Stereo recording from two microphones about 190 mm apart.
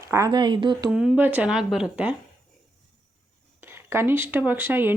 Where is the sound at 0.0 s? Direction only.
15° right (ahead or behind).